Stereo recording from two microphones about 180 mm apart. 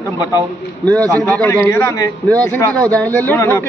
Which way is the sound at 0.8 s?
5° left (ahead or behind).